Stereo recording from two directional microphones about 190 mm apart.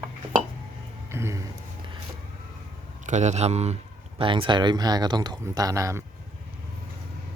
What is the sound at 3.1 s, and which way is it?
A man's voice, 40° right (ahead or behind).